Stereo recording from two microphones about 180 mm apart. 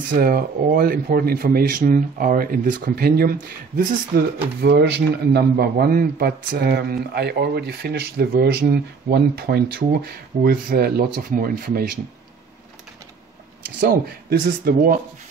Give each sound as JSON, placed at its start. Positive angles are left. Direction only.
{"t": 0.1, "sound": "speech", "side_deg": -55}
{"t": 14.4, "sound": "speech", "side_deg": -50}